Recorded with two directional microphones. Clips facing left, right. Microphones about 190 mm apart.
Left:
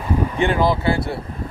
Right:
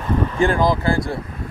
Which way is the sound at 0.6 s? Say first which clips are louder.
Even; 5° left (ahead or behind).